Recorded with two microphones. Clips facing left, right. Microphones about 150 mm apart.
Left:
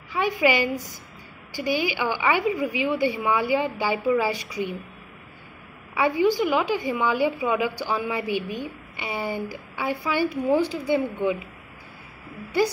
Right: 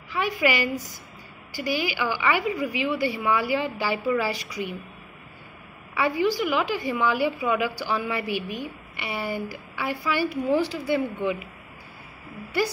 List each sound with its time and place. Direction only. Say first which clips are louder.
0.1 s a woman's voice: left 2 dB; 20° left (ahead or behind)
5.9 s a woman's voice: left 3 dB; 20° left (ahead or behind)